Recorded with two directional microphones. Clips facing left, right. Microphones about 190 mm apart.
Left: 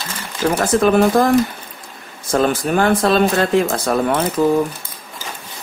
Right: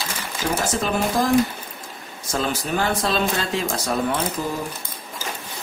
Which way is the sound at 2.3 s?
55° left (ahead or behind).